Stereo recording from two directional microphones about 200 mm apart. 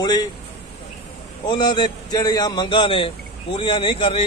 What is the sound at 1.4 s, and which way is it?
Speech, 20° left (ahead or behind).